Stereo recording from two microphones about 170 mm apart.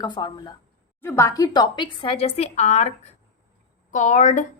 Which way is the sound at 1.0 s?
15° left (ahead or behind).